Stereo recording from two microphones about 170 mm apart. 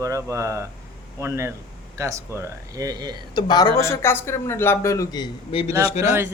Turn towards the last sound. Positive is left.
turn(degrees=40)  # may be behind; listen again after turning